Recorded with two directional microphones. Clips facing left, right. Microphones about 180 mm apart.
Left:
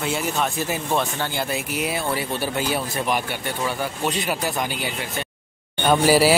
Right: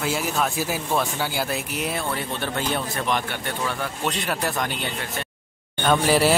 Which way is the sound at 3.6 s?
5° left (ahead or behind).